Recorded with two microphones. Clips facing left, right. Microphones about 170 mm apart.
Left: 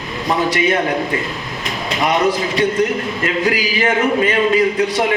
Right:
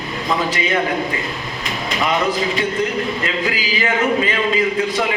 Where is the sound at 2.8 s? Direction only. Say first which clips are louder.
Left 3 dB; 45° left (ahead or behind).